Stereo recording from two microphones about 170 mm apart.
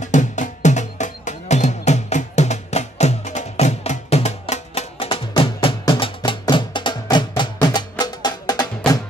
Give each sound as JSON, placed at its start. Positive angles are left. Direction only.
{"t": 0.0, "sound": "music", "side_deg": 45}